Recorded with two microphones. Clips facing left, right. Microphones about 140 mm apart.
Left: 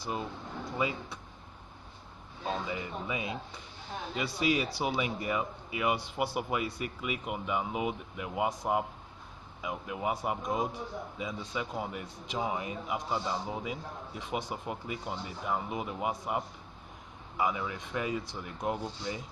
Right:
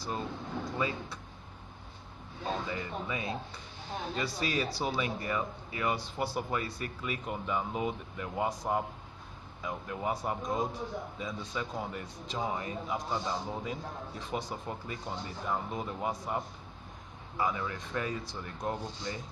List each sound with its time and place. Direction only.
0.7 s a man's voice: 15° left (ahead or behind)
2.4 s a man's voice: 15° left (ahead or behind)